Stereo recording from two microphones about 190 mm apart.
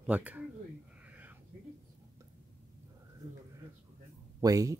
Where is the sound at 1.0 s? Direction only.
10° right (ahead or behind).